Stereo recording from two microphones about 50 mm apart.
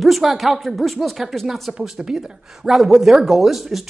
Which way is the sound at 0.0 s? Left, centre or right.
Centre.